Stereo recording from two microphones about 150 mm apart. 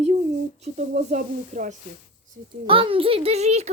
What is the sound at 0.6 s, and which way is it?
Speech, 50° right (ahead or behind).